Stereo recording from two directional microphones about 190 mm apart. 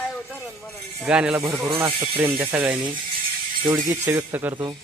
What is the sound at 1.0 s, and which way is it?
Speech, 5° right (ahead or behind).